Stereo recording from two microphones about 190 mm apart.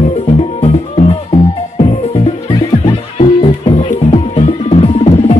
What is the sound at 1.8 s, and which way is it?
Music, 30° left (ahead or behind).